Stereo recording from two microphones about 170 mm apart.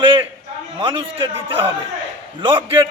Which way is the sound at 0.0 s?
30° right (ahead or behind).